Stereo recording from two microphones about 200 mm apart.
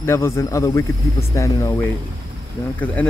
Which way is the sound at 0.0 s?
15° left (ahead or behind).